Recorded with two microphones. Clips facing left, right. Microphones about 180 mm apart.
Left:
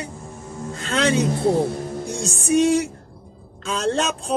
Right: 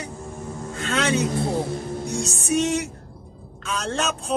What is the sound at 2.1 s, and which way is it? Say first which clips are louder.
Speech: left 4 dB; 30° left (ahead or behind).